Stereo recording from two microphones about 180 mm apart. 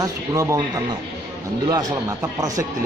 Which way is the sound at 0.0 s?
20° right (ahead or behind).